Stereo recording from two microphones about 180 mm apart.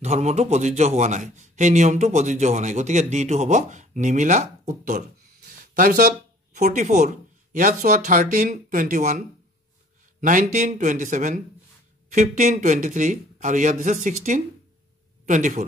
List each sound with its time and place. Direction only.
0.0 s a man's voice: 40° right (ahead or behind)
10.2 s speech: 45° right (ahead or behind)